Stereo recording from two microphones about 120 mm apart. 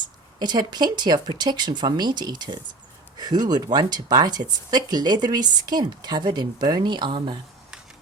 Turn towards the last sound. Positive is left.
turn(degrees=-40)  # may be behind; listen again after turning